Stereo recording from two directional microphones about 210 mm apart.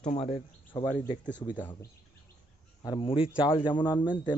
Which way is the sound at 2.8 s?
20° left (ahead or behind).